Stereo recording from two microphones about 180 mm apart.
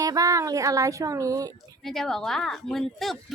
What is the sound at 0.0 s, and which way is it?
Speech, 20° right (ahead or behind).